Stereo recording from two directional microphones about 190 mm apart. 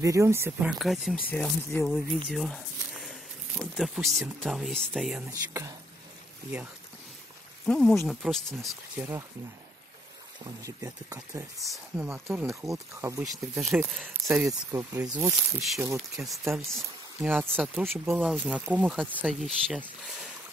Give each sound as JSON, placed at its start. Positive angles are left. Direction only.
{"t": 0.0, "sound": "speech", "side_deg": -15}
{"t": 0.7, "sound": "speech", "side_deg": 0}
{"t": 1.3, "sound": "speech", "side_deg": 10}
{"t": 2.2, "sound": "a sound", "side_deg": 0}
{"t": 4.4, "sound": "speech", "side_deg": 0}
{"t": 5.2, "sound": "speech", "side_deg": -15}
{"t": 7.6, "sound": "speech", "side_deg": 5}
{"t": 10.6, "sound": "speech", "side_deg": -15}
{"t": 13.6, "sound": "speech", "side_deg": -5}
{"t": 14.4, "sound": "speech", "side_deg": -15}
{"t": 15.8, "sound": "speech", "side_deg": -15}
{"t": 16.7, "sound": "speech", "side_deg": 0}
{"t": 17.4, "sound": "speech", "side_deg": -10}